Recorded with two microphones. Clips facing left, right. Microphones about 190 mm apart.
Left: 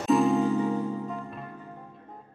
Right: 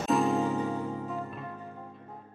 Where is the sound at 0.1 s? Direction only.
Centre (ahead or behind).